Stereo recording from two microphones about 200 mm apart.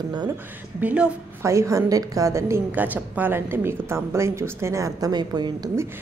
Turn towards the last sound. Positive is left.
turn(degrees=-15)  # may be behind; listen again after turning